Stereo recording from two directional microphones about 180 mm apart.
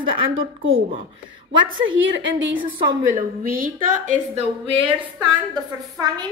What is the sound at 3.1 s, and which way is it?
A woman's voice, 50° right (ahead or behind).